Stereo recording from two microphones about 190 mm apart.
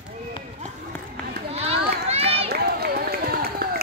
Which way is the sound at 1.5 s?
30° right (ahead or behind).